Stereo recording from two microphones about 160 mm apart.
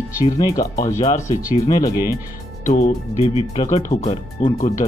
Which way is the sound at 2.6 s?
45° left (ahead or behind).